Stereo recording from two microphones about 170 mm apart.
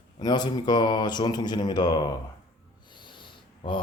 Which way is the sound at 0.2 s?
25° left (ahead or behind).